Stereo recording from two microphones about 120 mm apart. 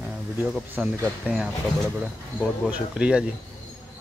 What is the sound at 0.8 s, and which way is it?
Speech, 5° right (ahead or behind).